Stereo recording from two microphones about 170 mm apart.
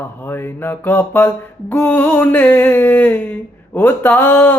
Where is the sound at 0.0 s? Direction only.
10° left (ahead or behind).